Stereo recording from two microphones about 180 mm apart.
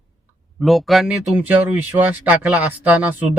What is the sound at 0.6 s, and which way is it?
Speech, centre (ahead or behind).